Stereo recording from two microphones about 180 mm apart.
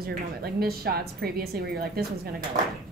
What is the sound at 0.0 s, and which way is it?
A woman's voice, 60° right (ahead or behind).